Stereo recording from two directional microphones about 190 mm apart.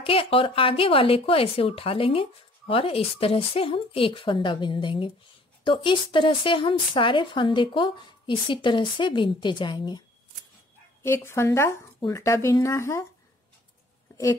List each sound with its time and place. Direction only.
0.0 s speech: 30° left (ahead or behind)